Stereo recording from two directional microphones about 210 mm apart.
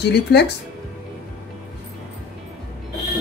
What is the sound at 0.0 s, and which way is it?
Speech, 50° left (ahead or behind).